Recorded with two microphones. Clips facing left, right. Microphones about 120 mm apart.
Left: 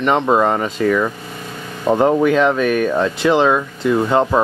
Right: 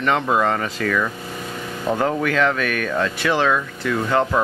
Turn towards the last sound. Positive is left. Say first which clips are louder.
# left 4 dB
turn(degrees=25)  # may be behind; listen again after turning